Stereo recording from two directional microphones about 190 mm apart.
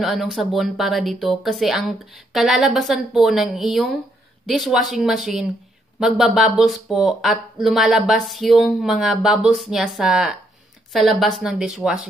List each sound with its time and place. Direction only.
0.0 s speech: centre (ahead or behind)